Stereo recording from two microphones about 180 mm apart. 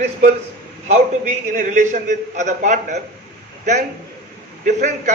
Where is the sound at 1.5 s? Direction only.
45° right (ahead or behind).